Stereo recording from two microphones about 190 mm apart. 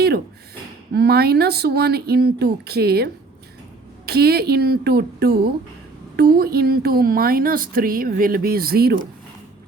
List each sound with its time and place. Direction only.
0.9 s speech: 55° right (ahead or behind)